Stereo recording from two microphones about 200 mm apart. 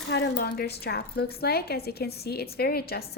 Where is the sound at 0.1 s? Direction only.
55° left (ahead or behind).